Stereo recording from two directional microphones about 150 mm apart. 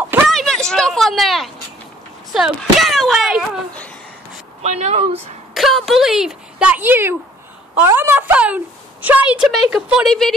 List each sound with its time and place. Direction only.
0.3 s a sound: 5° left (ahead or behind)
2.3 s speech: centre (ahead or behind)
4.6 s speech: 45° right (ahead or behind)
5.5 s a woman's voice: centre (ahead or behind)